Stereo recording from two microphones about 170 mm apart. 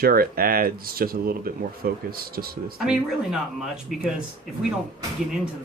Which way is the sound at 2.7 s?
5° right (ahead or behind).